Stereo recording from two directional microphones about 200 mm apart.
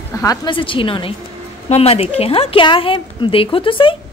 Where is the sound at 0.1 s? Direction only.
15° left (ahead or behind).